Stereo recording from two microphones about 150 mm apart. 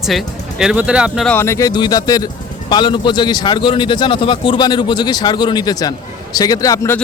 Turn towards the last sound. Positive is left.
turn(degrees=20)  # may be behind; listen again after turning